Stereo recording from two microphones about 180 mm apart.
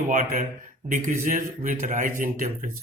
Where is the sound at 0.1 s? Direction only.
45° right (ahead or behind).